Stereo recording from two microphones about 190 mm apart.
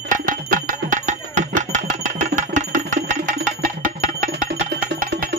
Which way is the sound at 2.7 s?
40° right (ahead or behind).